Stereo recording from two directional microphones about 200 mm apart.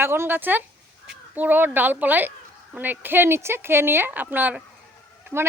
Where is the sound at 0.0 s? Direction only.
10° right (ahead or behind).